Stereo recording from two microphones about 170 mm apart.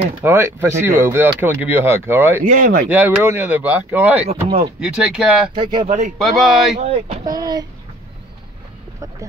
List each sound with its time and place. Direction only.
0.2 s speech: 15° right (ahead or behind)
2.4 s speech: 50° right (ahead or behind)
2.9 s speech: 10° right (ahead or behind)
5.5 s speech: 25° right (ahead or behind)
5.9 s speech: 45° right (ahead or behind)
6.2 s speech: centre (ahead or behind)
6.8 s speech: 40° right (ahead or behind)
7.2 s speech: 20° right (ahead or behind)